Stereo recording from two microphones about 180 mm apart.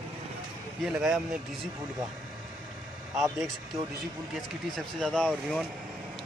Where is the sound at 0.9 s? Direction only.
5° right (ahead or behind).